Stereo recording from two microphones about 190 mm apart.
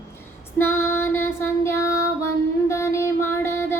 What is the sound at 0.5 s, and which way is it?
Child singing, 10° left (ahead or behind).